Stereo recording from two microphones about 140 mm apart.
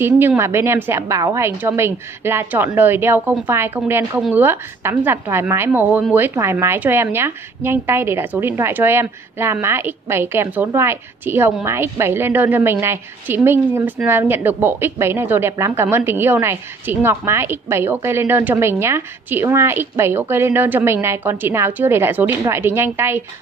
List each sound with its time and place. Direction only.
0.0 s a woman's voice: 15° right (ahead or behind)